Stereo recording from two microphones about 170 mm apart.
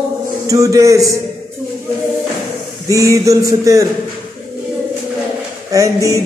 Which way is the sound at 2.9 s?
20° right (ahead or behind).